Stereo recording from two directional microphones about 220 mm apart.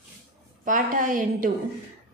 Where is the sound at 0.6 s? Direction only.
40° right (ahead or behind).